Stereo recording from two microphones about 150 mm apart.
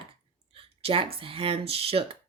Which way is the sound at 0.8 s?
40° right (ahead or behind).